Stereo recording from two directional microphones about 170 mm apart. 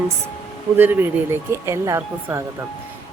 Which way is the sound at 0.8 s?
10° right (ahead or behind).